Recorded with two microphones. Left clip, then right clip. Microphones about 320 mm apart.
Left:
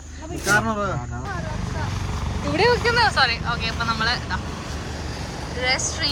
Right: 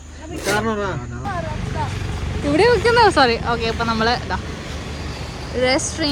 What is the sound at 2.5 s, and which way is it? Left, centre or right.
Speech, centre.